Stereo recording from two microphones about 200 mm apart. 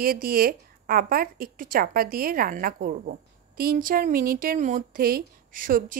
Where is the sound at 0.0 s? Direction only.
45° right (ahead or behind).